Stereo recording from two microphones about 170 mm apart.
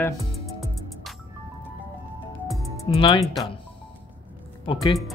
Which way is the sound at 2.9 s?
35° left (ahead or behind).